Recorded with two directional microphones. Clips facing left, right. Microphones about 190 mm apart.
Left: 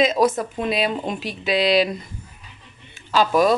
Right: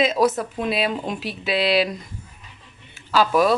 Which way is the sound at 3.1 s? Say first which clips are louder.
Left 1 dB; 5° right (ahead or behind).